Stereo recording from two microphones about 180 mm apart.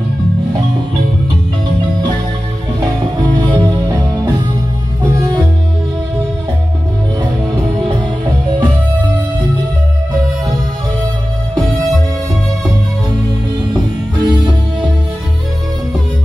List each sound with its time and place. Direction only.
3.2 s music: 25° right (ahead or behind)
7.2 s music: 25° right (ahead or behind)
13.7 s music: 25° right (ahead or behind)